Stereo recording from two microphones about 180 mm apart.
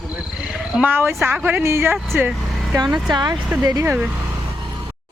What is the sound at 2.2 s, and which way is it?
Vehicle, centre (ahead or behind).